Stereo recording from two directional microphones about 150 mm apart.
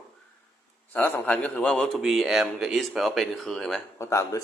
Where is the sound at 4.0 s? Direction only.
20° left (ahead or behind).